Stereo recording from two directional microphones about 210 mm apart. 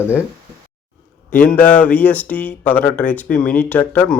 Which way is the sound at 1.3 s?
5° left (ahead or behind).